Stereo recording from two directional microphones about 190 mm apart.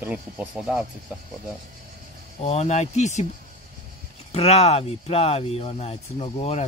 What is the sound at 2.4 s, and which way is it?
Speech, 35° left (ahead or behind).